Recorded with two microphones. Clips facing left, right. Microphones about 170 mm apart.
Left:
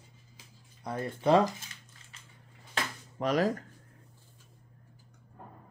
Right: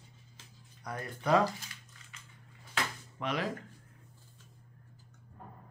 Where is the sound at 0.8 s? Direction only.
25° left (ahead or behind).